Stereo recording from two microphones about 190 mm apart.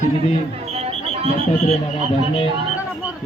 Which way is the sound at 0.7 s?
35° right (ahead or behind).